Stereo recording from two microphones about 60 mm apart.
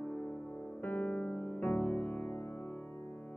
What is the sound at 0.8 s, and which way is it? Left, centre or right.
Music, left.